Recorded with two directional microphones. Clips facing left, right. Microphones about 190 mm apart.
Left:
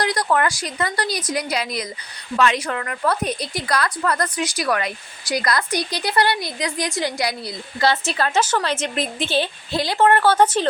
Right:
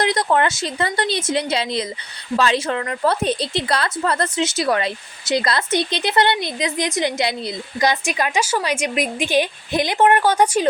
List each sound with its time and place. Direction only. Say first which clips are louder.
0.0 s speech: right 2 dB; 25° right (ahead or behind)